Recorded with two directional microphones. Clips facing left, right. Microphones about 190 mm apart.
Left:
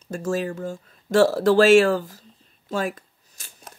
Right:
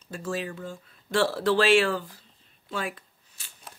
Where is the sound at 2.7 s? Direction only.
45° left (ahead or behind).